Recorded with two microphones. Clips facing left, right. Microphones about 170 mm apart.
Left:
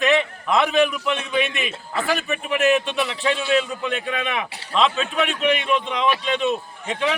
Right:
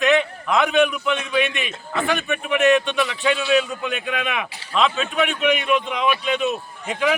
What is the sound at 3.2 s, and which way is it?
Speech, 30° left (ahead or behind).